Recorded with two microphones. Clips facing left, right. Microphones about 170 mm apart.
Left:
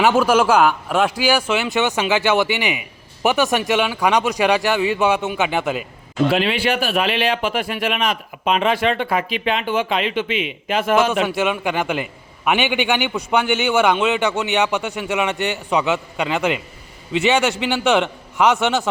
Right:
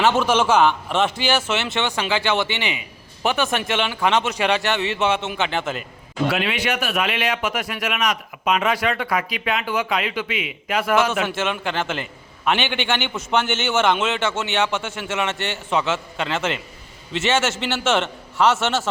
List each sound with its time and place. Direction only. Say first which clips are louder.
0.0 s a man's voice: left 3 dB; 10° left (ahead or behind)
6.2 s a man's voice: left 4 dB; 30° left (ahead or behind); by 13.9 s 10° left (ahead or behind)
13.9 s speech: left 4 dB; centre (ahead or behind)
14.2 s a man's voice: left 3 dB; 15° left (ahead or behind)